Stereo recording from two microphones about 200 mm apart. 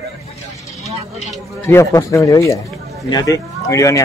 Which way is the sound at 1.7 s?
15° left (ahead or behind).